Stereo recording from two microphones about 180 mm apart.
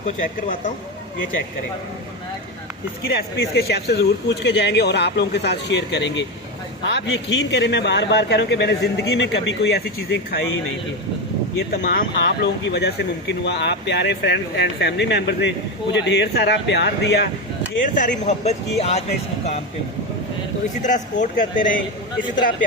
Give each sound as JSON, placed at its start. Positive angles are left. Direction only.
{"t": 3.1, "sound": "speech", "side_deg": 60}
{"t": 11.7, "sound": "speech", "side_deg": 60}
{"t": 17.8, "sound": "speech", "side_deg": 45}
{"t": 18.8, "sound": "speech", "side_deg": 35}
{"t": 20.8, "sound": "speech", "side_deg": 45}